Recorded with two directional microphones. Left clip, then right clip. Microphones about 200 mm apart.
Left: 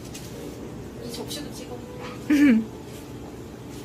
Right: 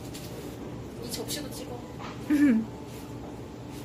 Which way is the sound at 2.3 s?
15° left (ahead or behind).